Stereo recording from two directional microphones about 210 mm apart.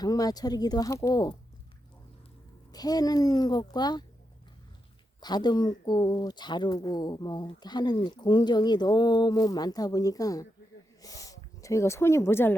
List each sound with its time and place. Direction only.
0.0 s speech: 20° left (ahead or behind)
2.7 s speech: 20° left (ahead or behind)
5.2 s speech: 20° left (ahead or behind)